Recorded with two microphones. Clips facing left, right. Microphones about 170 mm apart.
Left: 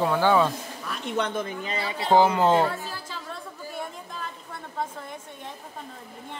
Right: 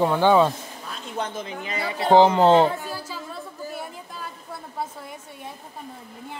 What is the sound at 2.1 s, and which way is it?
Speech, 25° right (ahead or behind).